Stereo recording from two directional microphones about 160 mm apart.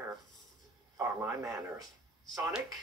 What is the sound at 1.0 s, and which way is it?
Speech, 15° right (ahead or behind).